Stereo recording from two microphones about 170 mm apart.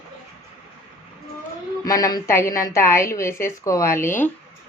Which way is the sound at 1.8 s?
20° left (ahead or behind).